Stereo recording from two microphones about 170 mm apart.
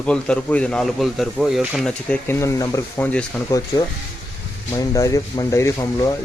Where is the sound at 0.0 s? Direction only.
5° left (ahead or behind).